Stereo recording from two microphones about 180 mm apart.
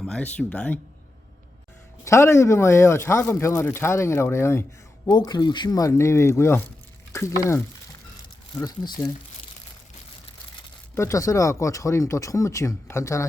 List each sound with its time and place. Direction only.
0.0 s speech: 5° left (ahead or behind)
2.0 s speech: 15° left (ahead or behind)
10.9 s speech: 15° left (ahead or behind)